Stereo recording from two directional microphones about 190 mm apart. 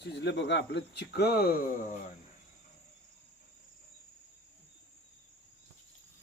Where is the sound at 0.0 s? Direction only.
60° left (ahead or behind).